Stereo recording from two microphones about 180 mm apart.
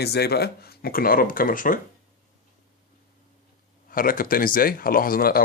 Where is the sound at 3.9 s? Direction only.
50° left (ahead or behind).